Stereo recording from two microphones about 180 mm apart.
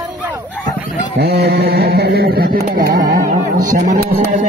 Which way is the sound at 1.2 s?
60° right (ahead or behind).